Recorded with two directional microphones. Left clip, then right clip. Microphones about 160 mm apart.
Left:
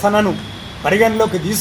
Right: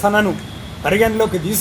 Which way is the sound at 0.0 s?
15° right (ahead or behind).